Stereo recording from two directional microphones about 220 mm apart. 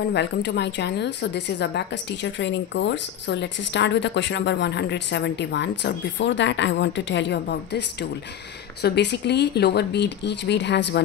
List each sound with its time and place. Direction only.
0.1 s a woman's voice: 50° left (ahead or behind)